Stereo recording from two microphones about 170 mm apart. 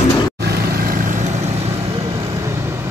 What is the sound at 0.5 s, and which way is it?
Vehicle, 60° right (ahead or behind).